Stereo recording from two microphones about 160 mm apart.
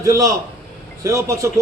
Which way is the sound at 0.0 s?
20° right (ahead or behind).